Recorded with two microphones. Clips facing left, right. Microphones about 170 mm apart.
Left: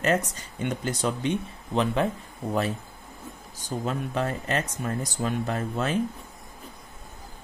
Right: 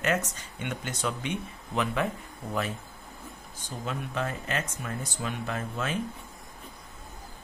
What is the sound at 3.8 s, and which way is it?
Speech, 40° left (ahead or behind).